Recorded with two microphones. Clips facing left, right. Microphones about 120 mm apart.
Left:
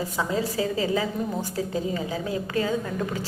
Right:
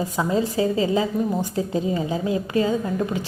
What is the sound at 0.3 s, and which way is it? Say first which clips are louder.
A woman's voice: right 7 dB; 25° right (ahead or behind).